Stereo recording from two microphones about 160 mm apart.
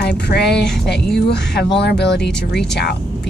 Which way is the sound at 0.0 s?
90° left.